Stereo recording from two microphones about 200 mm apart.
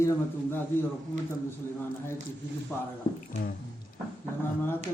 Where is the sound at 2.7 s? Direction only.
10° left (ahead or behind).